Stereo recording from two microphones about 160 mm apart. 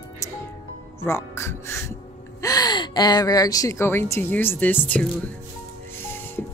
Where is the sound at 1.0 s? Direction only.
15° left (ahead or behind).